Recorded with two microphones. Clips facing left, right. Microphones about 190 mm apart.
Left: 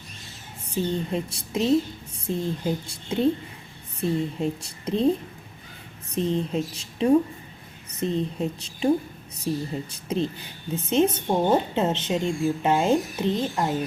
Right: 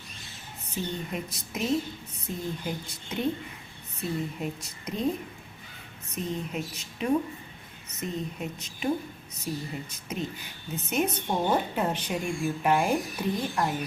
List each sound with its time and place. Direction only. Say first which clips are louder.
0.7 s a woman's voice: left 7 dB; 30° left (ahead or behind)
4.4 s speech: left 7 dB; 30° left (ahead or behind)
6.1 s a woman's voice: left 8 dB; 30° left (ahead or behind)